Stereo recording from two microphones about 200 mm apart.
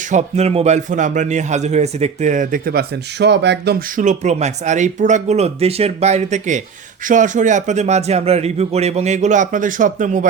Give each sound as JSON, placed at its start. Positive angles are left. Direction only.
{"t": 0.1, "sound": "speech", "side_deg": -35}
{"t": 3.9, "sound": "speech", "side_deg": -40}